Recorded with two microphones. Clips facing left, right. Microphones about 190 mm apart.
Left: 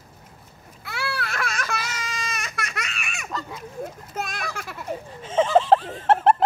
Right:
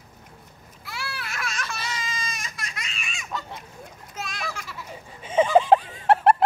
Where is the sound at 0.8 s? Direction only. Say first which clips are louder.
Left 6 dB; 65° left (ahead or behind).